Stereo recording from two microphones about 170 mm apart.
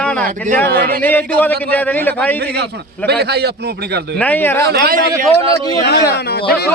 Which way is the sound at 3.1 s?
75° right (ahead or behind).